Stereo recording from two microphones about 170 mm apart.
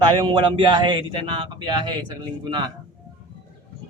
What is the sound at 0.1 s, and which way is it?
A man's voice, 30° right (ahead or behind).